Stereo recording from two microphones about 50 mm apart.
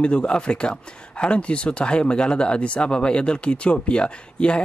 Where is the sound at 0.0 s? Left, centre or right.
Left.